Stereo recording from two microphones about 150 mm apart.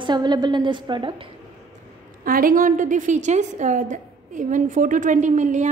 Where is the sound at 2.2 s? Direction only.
70° right (ahead or behind).